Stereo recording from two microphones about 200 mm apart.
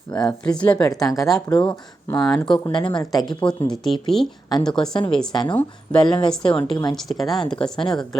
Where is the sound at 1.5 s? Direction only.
20° left (ahead or behind).